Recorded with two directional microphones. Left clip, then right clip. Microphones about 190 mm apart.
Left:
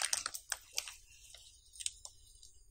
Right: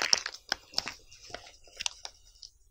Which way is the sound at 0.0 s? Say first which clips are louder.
Right 10 dB; 20° right (ahead or behind).